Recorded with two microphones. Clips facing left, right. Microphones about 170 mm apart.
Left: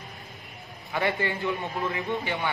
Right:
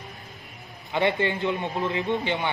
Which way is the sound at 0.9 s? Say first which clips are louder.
Right 4 dB; 20° right (ahead or behind).